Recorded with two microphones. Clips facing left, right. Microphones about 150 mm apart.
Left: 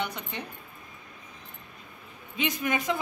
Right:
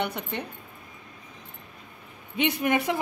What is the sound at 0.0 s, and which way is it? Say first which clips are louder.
Speech: right 4 dB; 60° right (ahead or behind).